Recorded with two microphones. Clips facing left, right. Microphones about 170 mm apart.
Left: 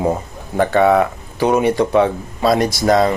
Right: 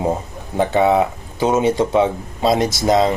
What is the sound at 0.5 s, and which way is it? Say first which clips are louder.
Speech: left 2 dB; 20° right (ahead or behind).